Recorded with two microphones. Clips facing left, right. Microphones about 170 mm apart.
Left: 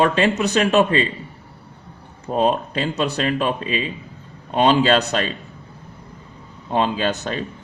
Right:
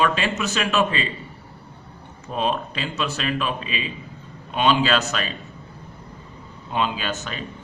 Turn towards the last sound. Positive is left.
turn(degrees=35)  # may be behind; listen again after turning